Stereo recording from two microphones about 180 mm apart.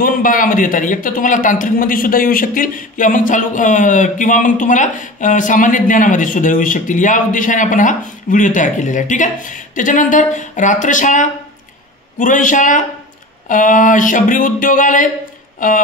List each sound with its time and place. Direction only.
0.0 s a man's voice: 50° left (ahead or behind)